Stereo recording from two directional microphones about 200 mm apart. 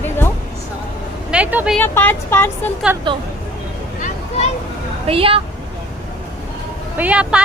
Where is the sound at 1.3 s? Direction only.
5° right (ahead or behind).